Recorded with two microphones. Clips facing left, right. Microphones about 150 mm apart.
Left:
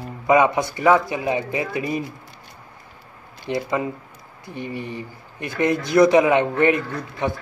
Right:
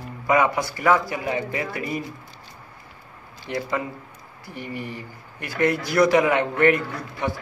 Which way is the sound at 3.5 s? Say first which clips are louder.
Left 4 dB; 20° left (ahead or behind).